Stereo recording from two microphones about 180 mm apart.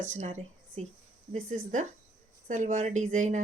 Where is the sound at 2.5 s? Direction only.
45° right (ahead or behind).